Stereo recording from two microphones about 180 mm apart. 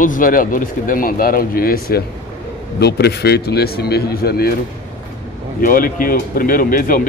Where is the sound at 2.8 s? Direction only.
65° left (ahead or behind).